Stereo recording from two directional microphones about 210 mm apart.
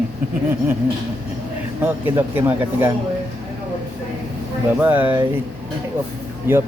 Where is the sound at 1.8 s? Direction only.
10° right (ahead or behind).